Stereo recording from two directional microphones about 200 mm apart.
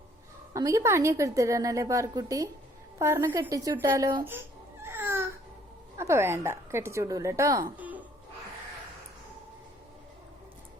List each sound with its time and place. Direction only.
0.5 s a woman's voice: 15° right (ahead or behind)
4.3 s baby cry: 10° right (ahead or behind)
6.0 s a woman's voice: 15° right (ahead or behind)